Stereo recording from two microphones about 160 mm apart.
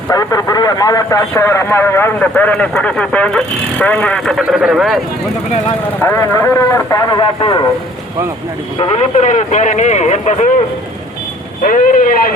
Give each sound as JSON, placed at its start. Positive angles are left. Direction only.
{"t": 0.1, "sound": "a man's voice", "side_deg": 20}
{"t": 6.0, "sound": "a man's voice", "side_deg": 15}
{"t": 9.1, "sound": "a man's voice", "side_deg": 50}
{"t": 11.6, "sound": "speech", "side_deg": 55}